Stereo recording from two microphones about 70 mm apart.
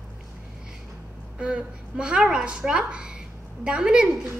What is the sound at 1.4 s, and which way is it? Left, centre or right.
A woman's voice, centre.